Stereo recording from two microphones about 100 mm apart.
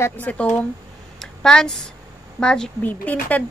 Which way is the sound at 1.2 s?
5° left (ahead or behind).